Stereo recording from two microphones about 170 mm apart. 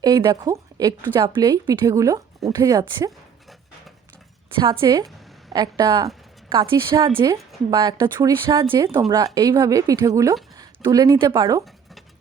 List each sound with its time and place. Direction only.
0.0 s a woman's voice: 20° right (ahead or behind)
4.5 s a woman's voice: 30° right (ahead or behind)